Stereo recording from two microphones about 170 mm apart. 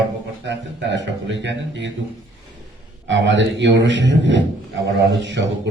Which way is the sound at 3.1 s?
90° right.